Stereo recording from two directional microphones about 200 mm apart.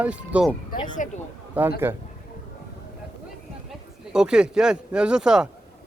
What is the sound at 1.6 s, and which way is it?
Speech, 5° right (ahead or behind).